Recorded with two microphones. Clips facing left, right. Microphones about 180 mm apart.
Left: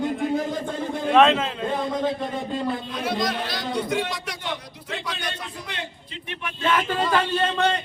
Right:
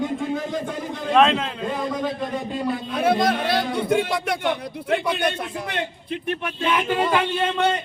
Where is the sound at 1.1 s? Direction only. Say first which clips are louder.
Even; centre (ahead or behind).